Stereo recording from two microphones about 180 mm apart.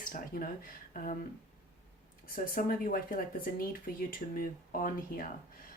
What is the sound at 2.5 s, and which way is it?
Speech, 50° left (ahead or behind).